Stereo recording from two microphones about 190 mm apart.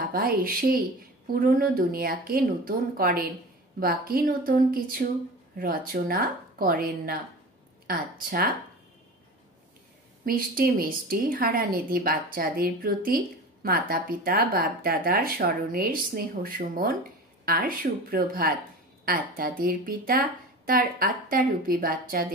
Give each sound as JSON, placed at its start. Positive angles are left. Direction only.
{"t": 0.1, "sound": "a woman's voice", "side_deg": -50}
{"t": 10.2, "sound": "a woman's voice", "side_deg": -50}